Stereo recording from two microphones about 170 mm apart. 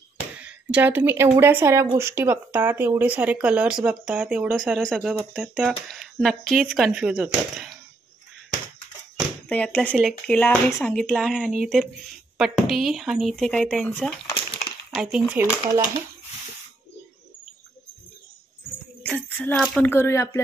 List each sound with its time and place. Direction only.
0.4 s speech: 5° right (ahead or behind)
9.5 s speech: 10° left (ahead or behind); by 15.8 s 10° right (ahead or behind)
19.0 s music: 10° left (ahead or behind)
19.6 s speech: centre (ahead or behind)
19.9 s speech: 15° left (ahead or behind)